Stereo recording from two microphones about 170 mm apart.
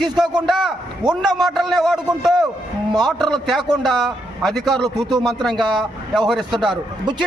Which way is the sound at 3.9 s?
Centre (ahead or behind).